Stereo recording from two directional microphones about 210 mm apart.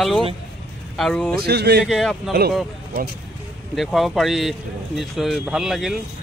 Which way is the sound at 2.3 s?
50° right (ahead or behind).